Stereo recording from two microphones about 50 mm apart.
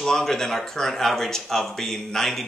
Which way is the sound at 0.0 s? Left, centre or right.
Centre.